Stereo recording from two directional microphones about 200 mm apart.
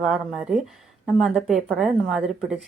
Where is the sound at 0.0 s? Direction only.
Centre (ahead or behind).